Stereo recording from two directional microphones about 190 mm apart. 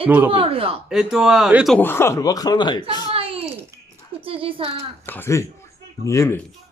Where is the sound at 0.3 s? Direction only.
30° right (ahead or behind).